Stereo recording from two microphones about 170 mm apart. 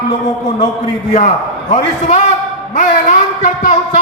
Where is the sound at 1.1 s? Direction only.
45° left (ahead or behind).